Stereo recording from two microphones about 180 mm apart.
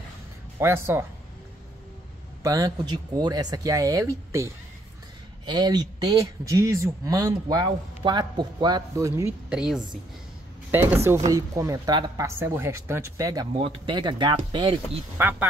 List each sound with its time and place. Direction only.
0.6 s speech: 15° right (ahead or behind)
2.4 s speech: 20° right (ahead or behind)
15.1 s speech: 10° right (ahead or behind)